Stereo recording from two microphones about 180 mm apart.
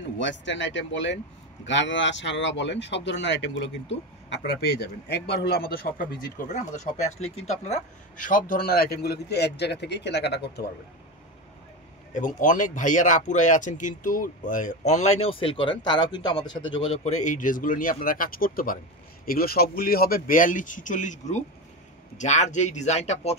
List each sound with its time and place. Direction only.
0.2 s speech: 85° left; by 6.0 s 55° left (ahead or behind)
6.5 s speech: 40° left (ahead or behind); by 10.7 s 65° left (ahead or behind)
12.1 s speech: 45° left (ahead or behind)